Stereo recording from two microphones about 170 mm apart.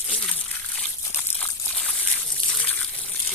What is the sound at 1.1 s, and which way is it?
Trickle, 10° left (ahead or behind).